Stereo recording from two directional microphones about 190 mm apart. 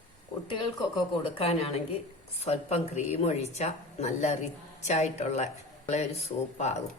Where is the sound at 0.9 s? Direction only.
30° left (ahead or behind).